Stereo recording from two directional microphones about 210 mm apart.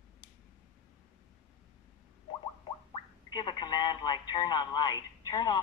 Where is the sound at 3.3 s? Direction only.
20° left (ahead or behind).